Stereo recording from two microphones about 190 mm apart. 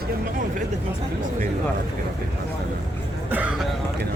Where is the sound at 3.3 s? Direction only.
5° right (ahead or behind).